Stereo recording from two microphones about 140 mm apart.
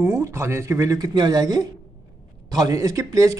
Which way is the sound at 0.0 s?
20° right (ahead or behind).